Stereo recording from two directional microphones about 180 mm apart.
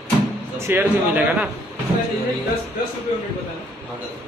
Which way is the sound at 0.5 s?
10° right (ahead or behind).